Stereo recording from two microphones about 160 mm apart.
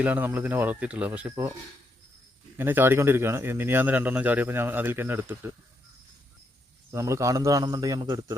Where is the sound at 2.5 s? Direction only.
15° right (ahead or behind).